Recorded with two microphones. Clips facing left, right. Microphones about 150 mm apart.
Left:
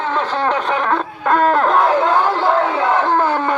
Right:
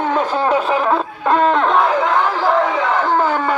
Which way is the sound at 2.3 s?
Centre (ahead or behind).